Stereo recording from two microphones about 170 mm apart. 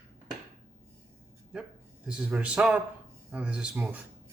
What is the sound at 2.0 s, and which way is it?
Speech, 5° right (ahead or behind).